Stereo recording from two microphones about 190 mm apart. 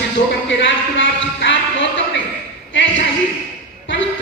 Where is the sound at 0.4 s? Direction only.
75° left (ahead or behind).